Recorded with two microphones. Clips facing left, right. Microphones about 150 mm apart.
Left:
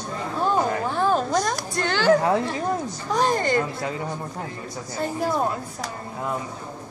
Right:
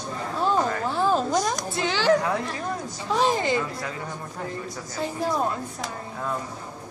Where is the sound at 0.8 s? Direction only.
Centre (ahead or behind).